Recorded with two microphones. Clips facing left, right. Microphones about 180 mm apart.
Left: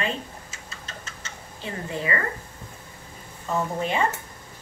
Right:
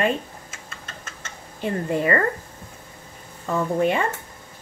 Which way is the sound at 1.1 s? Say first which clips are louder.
Right 1 dB; 55° right (ahead or behind).